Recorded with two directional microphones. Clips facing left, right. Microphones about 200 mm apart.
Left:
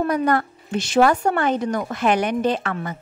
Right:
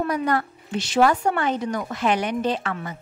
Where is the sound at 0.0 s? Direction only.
50° left (ahead or behind).